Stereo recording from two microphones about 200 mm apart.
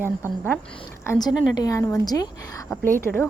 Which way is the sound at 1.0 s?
15° left (ahead or behind).